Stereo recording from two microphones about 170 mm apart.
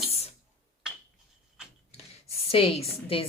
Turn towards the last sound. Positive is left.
turn(degrees=35)  # may be behind; listen again after turning